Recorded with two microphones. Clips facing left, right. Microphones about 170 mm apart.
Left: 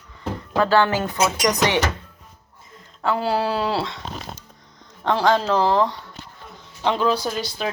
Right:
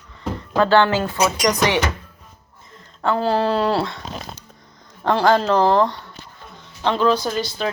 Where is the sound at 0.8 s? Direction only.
20° left (ahead or behind).